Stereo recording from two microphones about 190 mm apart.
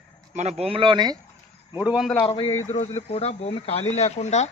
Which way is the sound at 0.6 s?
30° right (ahead or behind).